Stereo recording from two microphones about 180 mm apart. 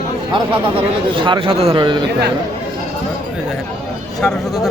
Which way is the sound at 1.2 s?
25° right (ahead or behind).